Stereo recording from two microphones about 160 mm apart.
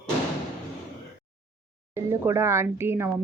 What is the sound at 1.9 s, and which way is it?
Speech, 15° right (ahead or behind).